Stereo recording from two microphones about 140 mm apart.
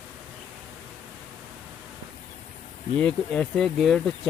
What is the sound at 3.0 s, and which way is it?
Speech, 10° left (ahead or behind).